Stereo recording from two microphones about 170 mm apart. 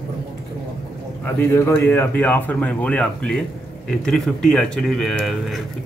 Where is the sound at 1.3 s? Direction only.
15° left (ahead or behind).